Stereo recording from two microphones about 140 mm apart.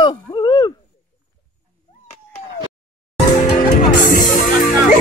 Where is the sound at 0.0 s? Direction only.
30° left (ahead or behind).